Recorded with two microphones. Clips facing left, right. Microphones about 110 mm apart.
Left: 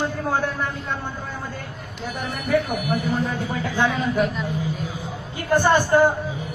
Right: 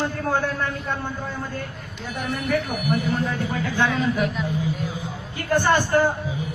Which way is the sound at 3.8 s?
5° left (ahead or behind).